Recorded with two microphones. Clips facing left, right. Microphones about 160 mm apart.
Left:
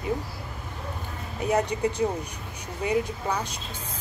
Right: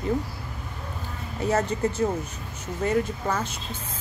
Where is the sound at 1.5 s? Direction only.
15° left (ahead or behind).